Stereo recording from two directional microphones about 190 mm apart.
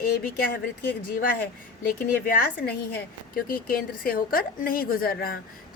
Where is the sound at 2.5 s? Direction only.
55° left (ahead or behind).